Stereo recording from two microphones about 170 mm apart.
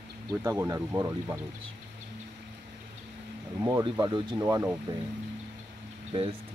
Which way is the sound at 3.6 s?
25° right (ahead or behind).